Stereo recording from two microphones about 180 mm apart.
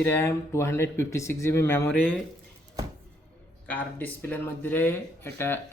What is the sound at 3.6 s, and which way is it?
Speech, 10° left (ahead or behind).